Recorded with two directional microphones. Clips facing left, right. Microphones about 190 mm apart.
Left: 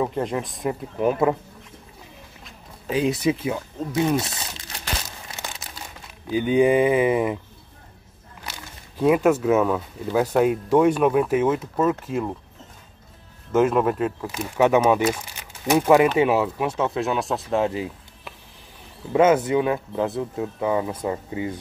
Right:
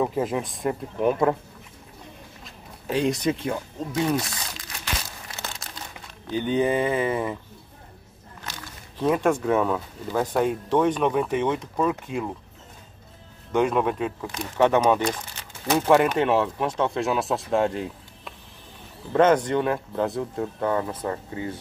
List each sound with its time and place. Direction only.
0.0 s speech: centre (ahead or behind)
2.4 s speech: 5° left (ahead or behind)
4.2 s crumpling: 25° left (ahead or behind)
6.2 s speech: 10° left (ahead or behind)
8.5 s speech: 10° left (ahead or behind)
13.5 s speech: 5° left (ahead or behind)